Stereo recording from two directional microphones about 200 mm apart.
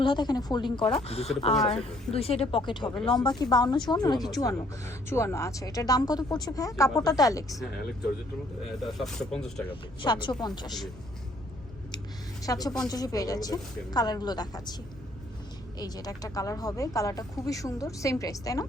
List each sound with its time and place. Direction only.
0.0 s speech: 20° left (ahead or behind)
1.0 s speech: 30° left (ahead or behind)
9.0 s speech: centre (ahead or behind)
10.0 s speech: 25° left (ahead or behind)
12.4 s a woman's voice: 20° left (ahead or behind)
15.8 s speech: 20° left (ahead or behind)